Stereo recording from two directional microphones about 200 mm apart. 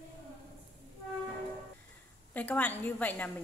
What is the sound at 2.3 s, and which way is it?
A woman's voice, 10° left (ahead or behind).